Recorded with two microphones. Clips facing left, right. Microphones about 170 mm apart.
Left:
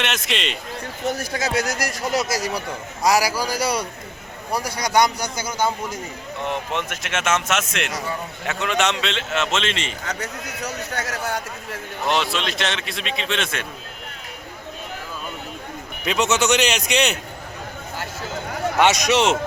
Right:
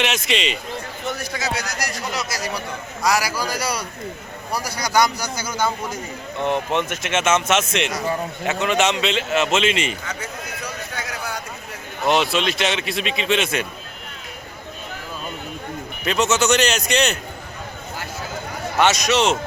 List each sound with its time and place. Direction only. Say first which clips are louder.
0.0 s a man's voice: right 3 dB; centre (ahead or behind)
1.0 s speech: left 3 dB; 45° left (ahead or behind)
3.1 s a man's voice: left 2 dB; 35° left (ahead or behind); by 5.7 s 20° left (ahead or behind)
6.9 s a man's voice: right 2 dB; centre (ahead or behind)
10.1 s a sound: left 1 dB; 40° left (ahead or behind)
12.0 s a man's voice: right 4 dB; 5° right (ahead or behind)
16.0 s a man's voice: right 1 dB; 5° right (ahead or behind)
18.8 s a man's voice: even; 15° left (ahead or behind)